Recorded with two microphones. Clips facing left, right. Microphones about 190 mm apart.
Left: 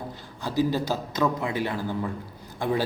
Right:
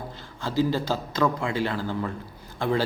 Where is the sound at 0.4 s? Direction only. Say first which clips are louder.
Even; 15° left (ahead or behind).